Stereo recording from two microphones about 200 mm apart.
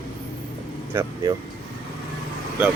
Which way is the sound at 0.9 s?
20° right (ahead or behind).